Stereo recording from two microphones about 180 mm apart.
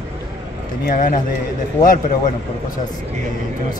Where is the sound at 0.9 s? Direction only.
45° left (ahead or behind).